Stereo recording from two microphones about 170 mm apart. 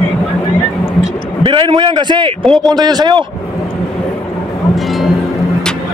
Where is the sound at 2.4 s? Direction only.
Centre (ahead or behind).